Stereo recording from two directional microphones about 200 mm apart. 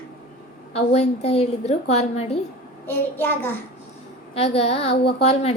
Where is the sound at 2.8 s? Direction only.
10° left (ahead or behind).